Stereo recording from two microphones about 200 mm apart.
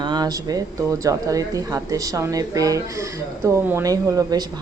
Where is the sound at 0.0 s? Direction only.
20° right (ahead or behind).